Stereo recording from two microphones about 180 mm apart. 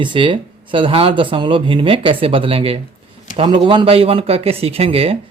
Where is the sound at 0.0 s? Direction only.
25° right (ahead or behind).